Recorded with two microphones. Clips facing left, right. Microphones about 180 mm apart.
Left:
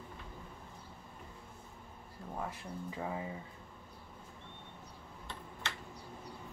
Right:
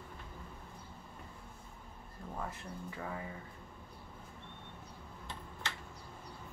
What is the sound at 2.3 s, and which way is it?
Speech, 15° left (ahead or behind).